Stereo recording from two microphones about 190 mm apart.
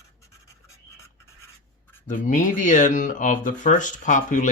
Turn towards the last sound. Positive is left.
turn(degrees=40)  # may be behind; listen again after turning